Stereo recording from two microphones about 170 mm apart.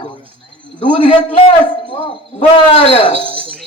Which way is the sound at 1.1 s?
30° left (ahead or behind).